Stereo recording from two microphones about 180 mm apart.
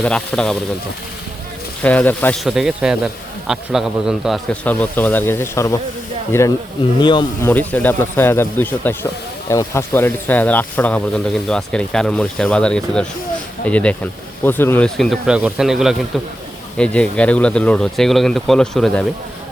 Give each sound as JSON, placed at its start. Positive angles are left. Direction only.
{"t": 0.0, "sound": "speech", "side_deg": 5}
{"t": 1.8, "sound": "speech", "side_deg": 10}
{"t": 2.4, "sound": "speech", "side_deg": 0}
{"t": 4.6, "sound": "speech", "side_deg": 10}
{"t": 7.0, "sound": "speech", "side_deg": 25}
{"t": 7.4, "sound": "speech", "side_deg": 10}